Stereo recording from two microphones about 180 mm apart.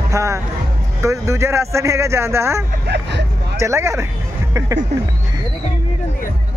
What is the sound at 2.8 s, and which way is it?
Vehicle, 70° right (ahead or behind).